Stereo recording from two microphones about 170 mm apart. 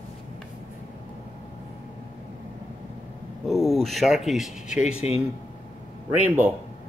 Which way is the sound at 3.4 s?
Centre (ahead or behind).